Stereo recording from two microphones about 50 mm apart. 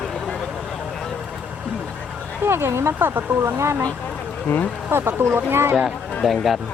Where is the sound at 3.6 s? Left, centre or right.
Right.